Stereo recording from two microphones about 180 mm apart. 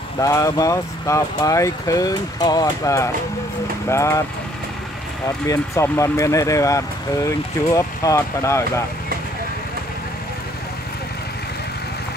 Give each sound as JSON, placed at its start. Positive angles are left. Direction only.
{"t": 0.2, "sound": "speech", "side_deg": 15}
{"t": 5.5, "sound": "speech", "side_deg": 15}